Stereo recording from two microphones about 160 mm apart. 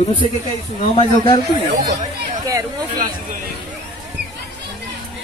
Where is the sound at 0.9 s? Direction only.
30° left (ahead or behind).